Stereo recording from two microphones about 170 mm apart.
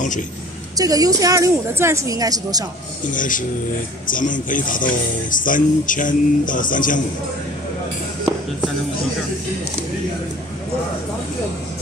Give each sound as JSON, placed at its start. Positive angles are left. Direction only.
{"t": 0.7, "sound": "a woman's voice", "side_deg": -20}
{"t": 3.1, "sound": "speech", "side_deg": 50}